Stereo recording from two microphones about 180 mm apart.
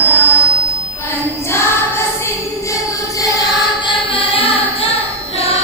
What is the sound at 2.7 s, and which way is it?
Music, 20° left (ahead or behind).